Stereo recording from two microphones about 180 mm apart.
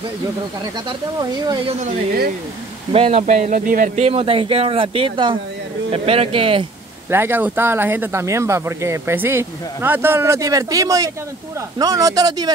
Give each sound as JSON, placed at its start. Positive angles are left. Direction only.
{"t": 2.9, "sound": "speech", "side_deg": -35}
{"t": 7.1, "sound": "speech", "side_deg": -10}